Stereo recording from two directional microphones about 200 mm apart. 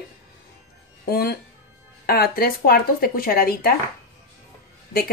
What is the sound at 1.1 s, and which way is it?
Speech, 50° left (ahead or behind).